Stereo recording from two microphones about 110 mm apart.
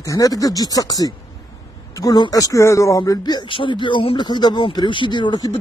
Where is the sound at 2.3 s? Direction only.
30° left (ahead or behind).